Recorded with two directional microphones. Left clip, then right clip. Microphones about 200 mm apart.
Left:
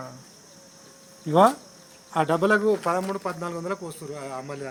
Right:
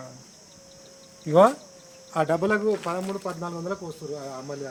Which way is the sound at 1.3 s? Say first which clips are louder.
Right 1 dB; 10° right (ahead or behind).